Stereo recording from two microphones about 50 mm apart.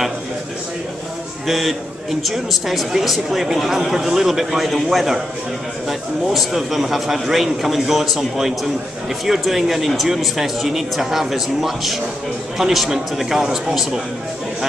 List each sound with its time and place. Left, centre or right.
1.5 s a man's voice: centre